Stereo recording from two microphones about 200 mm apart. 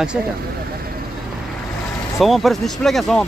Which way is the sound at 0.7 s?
50° right (ahead or behind).